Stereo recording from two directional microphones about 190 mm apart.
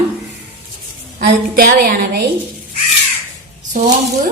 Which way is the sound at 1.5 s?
50° right (ahead or behind).